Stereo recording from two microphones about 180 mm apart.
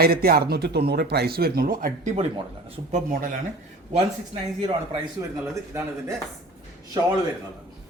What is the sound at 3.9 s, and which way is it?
Speech, 35° right (ahead or behind).